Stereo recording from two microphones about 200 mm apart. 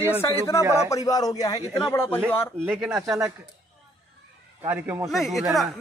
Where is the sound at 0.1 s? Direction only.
10° left (ahead or behind).